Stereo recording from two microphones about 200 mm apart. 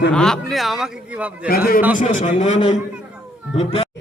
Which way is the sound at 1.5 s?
50° left (ahead or behind).